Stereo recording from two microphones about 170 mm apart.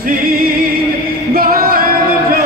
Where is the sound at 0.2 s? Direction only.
55° right (ahead or behind).